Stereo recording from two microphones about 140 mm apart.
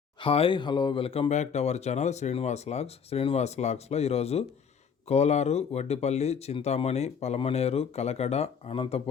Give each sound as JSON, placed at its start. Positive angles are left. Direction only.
{"t": 0.2, "sound": "speech", "side_deg": 40}